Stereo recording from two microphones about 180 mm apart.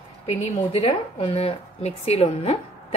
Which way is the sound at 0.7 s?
30° left (ahead or behind).